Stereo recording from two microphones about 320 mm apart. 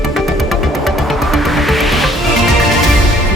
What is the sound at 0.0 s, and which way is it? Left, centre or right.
Music, centre.